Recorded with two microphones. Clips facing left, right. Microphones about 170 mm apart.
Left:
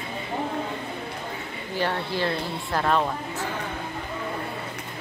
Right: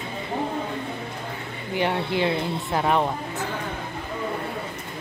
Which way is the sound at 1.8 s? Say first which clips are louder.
Right 3 dB; 20° right (ahead or behind).